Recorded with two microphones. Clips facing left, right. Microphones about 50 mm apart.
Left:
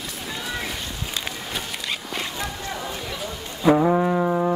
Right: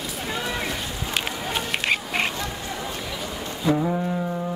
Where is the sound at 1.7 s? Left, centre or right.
Right.